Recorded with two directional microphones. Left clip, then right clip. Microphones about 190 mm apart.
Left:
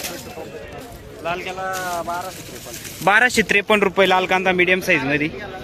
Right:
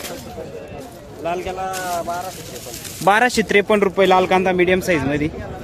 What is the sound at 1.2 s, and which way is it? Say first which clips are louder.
Speech: right 2 dB; 50° right (ahead or behind).